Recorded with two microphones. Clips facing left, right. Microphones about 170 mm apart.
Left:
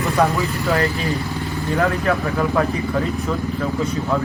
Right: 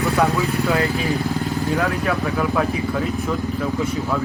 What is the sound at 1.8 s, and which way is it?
Speech, 5° right (ahead or behind).